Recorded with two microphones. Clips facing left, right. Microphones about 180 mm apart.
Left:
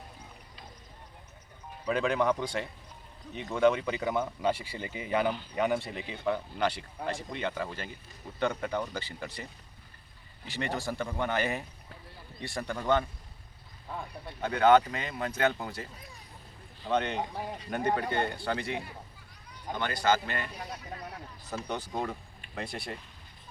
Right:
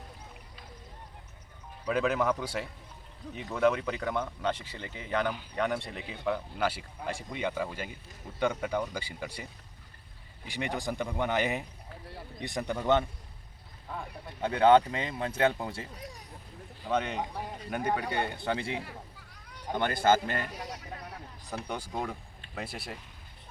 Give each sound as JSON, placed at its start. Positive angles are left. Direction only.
{"t": 1.9, "sound": "speech", "side_deg": -5}
{"t": 14.4, "sound": "speech", "side_deg": -30}
{"t": 16.8, "sound": "speech", "side_deg": -5}
{"t": 19.7, "sound": "speech", "side_deg": -50}
{"t": 21.7, "sound": "speech", "side_deg": -10}